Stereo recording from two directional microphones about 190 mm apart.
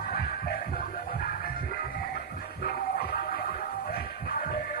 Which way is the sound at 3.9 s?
50° left (ahead or behind).